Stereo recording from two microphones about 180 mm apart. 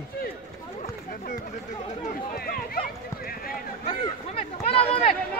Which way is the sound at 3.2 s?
55° left (ahead or behind).